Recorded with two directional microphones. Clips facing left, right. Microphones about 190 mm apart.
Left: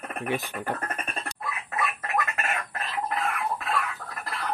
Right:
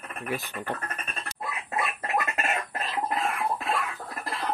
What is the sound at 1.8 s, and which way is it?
Cough, 25° right (ahead or behind).